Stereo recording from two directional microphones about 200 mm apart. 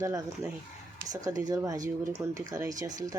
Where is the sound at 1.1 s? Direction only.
20° right (ahead or behind).